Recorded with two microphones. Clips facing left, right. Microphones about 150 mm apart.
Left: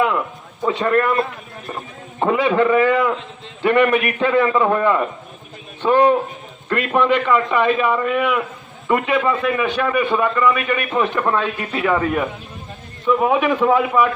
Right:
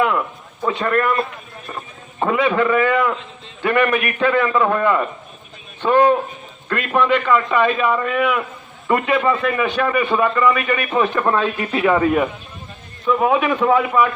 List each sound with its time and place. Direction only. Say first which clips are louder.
0.6 s a man's voice: left 1 dB; 20° left (ahead or behind)
7.3 s a man's voice: even; centre (ahead or behind)